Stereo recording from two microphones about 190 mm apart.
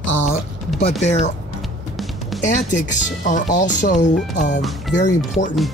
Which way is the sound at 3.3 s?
40° left (ahead or behind).